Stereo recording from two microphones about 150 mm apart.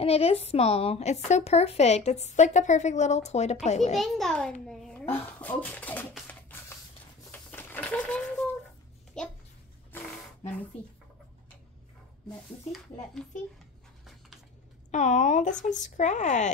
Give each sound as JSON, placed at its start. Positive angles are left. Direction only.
{"t": 0.0, "sound": "a woman's voice", "side_deg": 40}
{"t": 3.9, "sound": "a child's voice", "side_deg": 0}
{"t": 7.2, "sound": "a sound", "side_deg": 10}
{"t": 12.7, "sound": "a child's voice", "side_deg": 0}
{"t": 14.9, "sound": "a woman's voice", "side_deg": 50}